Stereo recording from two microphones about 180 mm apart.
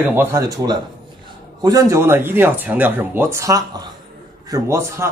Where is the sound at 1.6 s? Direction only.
15° right (ahead or behind).